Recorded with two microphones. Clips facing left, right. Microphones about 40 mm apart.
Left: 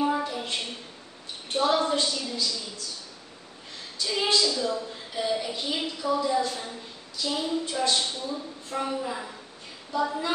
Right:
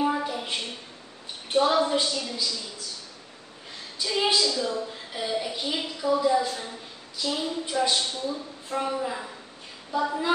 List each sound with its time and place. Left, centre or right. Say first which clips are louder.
0.0 s a sound: even; centre
1.5 s a woman's voice: right 2 dB; centre
4.0 s a woman's voice: right 1 dB; centre